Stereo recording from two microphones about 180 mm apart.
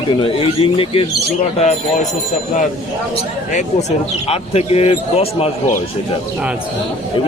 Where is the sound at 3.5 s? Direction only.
40° left (ahead or behind).